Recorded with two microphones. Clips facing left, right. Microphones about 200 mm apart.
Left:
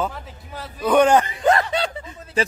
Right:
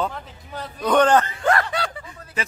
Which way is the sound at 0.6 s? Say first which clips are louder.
Left 2 dB; 5° left (ahead or behind).